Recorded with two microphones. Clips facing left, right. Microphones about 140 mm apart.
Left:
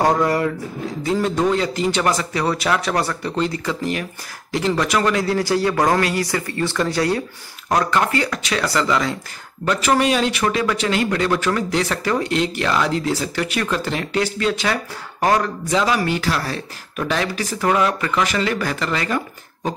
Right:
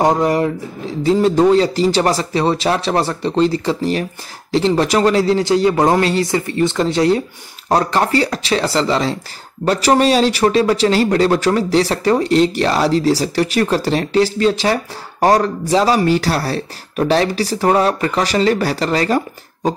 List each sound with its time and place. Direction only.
0.0 s speech: 20° right (ahead or behind)
7.7 s speech: 35° right (ahead or behind)